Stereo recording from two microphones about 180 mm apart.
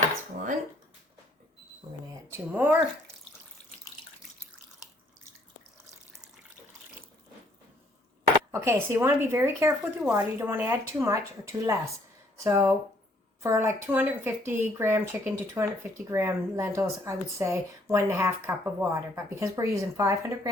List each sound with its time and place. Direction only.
2.3 s speech: 15° right (ahead or behind)
8.5 s speech: 15° right (ahead or behind)